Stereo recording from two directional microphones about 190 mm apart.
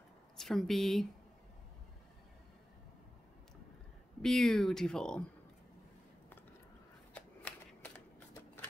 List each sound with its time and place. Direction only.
0.4 s speech: centre (ahead or behind)
4.2 s speech: centre (ahead or behind)